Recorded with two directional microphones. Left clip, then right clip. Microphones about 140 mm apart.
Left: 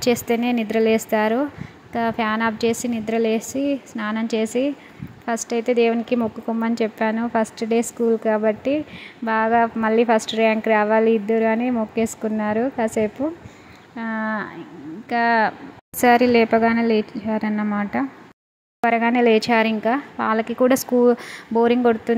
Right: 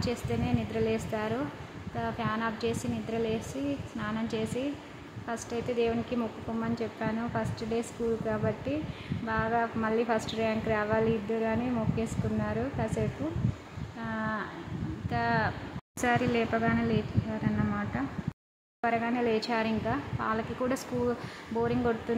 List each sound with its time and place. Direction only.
0.0 s a woman's voice: 60° left (ahead or behind)
13.9 s a sound: 50° left (ahead or behind)
15.0 s a woman's voice: 50° left (ahead or behind)
18.8 s speech: 60° left (ahead or behind)